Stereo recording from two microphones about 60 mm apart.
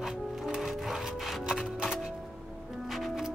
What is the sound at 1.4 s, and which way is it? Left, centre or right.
Music, centre.